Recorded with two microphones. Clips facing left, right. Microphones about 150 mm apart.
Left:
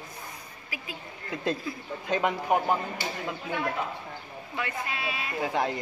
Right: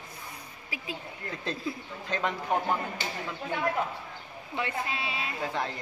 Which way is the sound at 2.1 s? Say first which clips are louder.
Left 4 dB; 15° left (ahead or behind).